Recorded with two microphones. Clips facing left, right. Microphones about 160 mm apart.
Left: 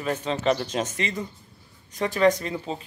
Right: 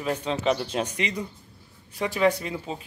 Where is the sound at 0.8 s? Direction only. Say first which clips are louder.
Even; 15° right (ahead or behind).